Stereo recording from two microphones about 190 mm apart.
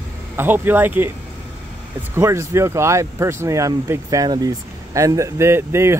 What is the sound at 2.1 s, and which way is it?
Speech, 15° right (ahead or behind).